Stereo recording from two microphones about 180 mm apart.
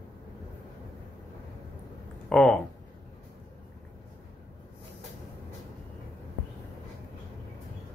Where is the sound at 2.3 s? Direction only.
Centre (ahead or behind).